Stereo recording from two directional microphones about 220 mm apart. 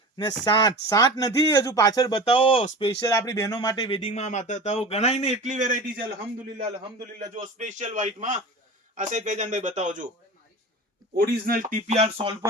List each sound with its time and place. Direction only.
0.4 s speech: 20° left (ahead or behind)
5.4 s speech: 35° right (ahead or behind)
7.3 s speech: 35° right (ahead or behind)
11.2 s speech: 40° right (ahead or behind); by 12.5 s 20° right (ahead or behind)